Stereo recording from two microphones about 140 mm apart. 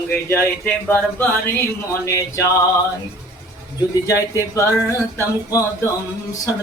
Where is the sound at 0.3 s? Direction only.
15° left (ahead or behind).